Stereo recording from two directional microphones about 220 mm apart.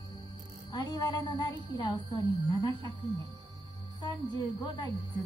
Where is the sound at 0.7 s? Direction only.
20° left (ahead or behind).